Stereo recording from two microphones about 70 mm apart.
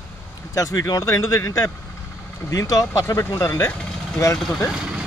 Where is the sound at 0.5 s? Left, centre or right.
Left.